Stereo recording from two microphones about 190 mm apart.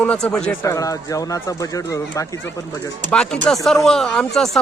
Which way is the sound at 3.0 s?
5° left (ahead or behind).